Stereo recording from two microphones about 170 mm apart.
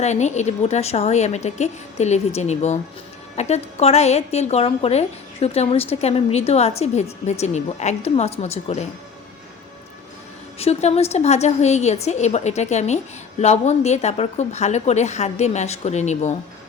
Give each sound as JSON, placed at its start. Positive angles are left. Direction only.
{"t": 0.0, "sound": "a woman's voice", "side_deg": 45}
{"t": 10.6, "sound": "a woman's voice", "side_deg": 40}